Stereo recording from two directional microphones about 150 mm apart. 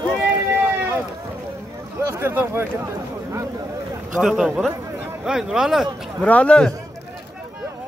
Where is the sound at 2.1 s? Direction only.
15° right (ahead or behind).